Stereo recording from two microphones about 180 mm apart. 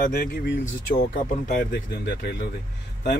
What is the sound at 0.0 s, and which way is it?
Speech, 55° left (ahead or behind).